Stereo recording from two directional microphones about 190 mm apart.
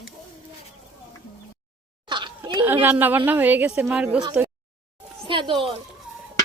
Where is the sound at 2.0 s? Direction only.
25° right (ahead or behind).